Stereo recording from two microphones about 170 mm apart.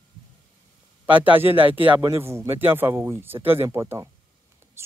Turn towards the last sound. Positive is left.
turn(degrees=-15)  # may be behind; listen again after turning